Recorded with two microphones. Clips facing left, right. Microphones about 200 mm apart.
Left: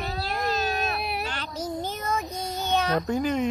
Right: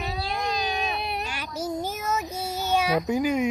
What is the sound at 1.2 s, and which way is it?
Child singing, 10° right (ahead or behind).